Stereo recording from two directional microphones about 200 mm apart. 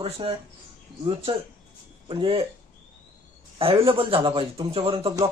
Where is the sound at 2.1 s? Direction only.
25° right (ahead or behind).